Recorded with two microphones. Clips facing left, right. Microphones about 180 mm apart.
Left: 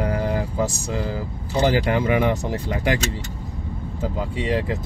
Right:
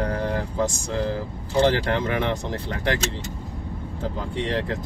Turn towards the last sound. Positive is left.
turn(degrees=5)  # may be behind; listen again after turning